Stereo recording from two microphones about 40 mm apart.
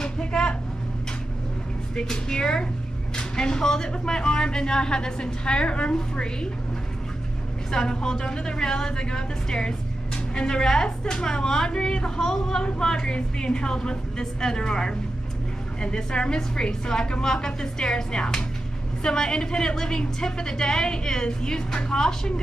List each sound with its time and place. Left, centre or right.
0.0 s a sound: centre
2.0 s a woman's voice: centre
7.7 s a woman's voice: centre